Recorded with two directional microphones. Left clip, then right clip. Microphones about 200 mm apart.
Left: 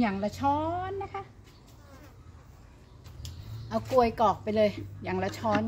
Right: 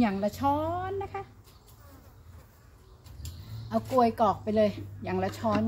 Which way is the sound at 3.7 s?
30° left (ahead or behind).